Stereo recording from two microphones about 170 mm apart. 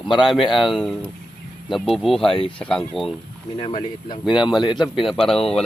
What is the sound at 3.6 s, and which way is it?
Speech, 25° left (ahead or behind).